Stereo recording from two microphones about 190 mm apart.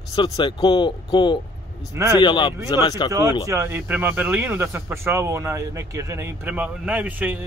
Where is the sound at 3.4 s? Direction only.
15° right (ahead or behind).